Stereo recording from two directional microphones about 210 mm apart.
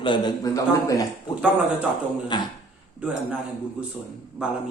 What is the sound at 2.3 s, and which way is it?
Speech, 20° left (ahead or behind).